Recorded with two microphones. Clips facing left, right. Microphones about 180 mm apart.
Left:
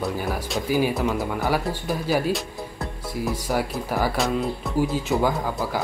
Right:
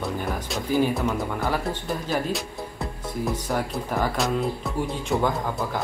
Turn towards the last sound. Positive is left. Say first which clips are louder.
# left 1 dB
turn(degrees=0)  # may be behind; listen again after turning